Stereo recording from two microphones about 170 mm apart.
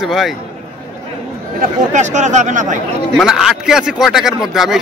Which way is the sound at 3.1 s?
Centre (ahead or behind).